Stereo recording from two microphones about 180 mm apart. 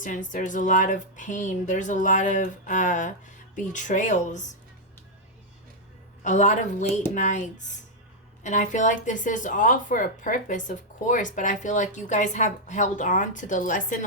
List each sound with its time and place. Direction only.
0.0 s speech: 45° left (ahead or behind)
6.2 s speech: 40° left (ahead or behind)
8.4 s speech: 45° left (ahead or behind)